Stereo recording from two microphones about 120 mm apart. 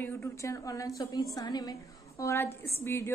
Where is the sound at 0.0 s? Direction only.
25° left (ahead or behind).